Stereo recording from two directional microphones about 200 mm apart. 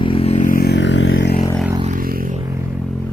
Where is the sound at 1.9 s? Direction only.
45° right (ahead or behind).